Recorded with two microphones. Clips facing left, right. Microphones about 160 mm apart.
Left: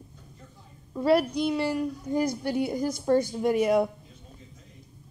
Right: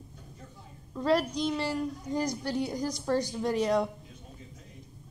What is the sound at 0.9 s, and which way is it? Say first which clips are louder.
A woman's voice: left 4 dB; 10° left (ahead or behind).